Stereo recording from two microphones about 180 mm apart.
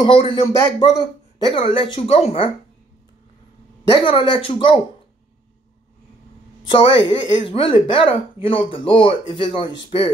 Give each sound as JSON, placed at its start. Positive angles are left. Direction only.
{"t": 0.0, "sound": "speech", "side_deg": 30}
{"t": 4.0, "sound": "speech", "side_deg": 30}
{"t": 6.6, "sound": "speech", "side_deg": 25}